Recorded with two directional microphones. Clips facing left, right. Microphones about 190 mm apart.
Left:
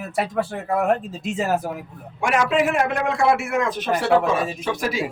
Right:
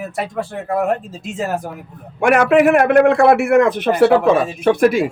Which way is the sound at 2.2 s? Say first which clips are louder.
Right 7 dB; 60° right (ahead or behind).